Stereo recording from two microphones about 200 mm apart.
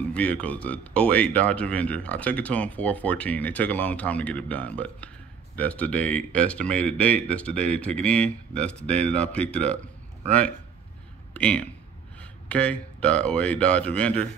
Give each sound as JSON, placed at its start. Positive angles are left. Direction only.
{"t": 0.1, "sound": "speech", "side_deg": 5}
{"t": 11.3, "sound": "speech", "side_deg": 5}